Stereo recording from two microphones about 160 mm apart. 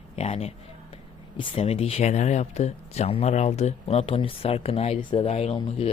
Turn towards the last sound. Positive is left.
turn(degrees=40)  # may be behind; listen again after turning